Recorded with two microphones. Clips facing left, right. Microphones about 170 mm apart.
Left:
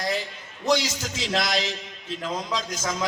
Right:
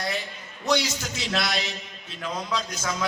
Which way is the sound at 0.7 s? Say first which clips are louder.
Left 1 dB; 90° left.